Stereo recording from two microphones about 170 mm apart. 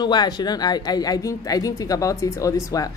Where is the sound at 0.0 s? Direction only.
25° left (ahead or behind).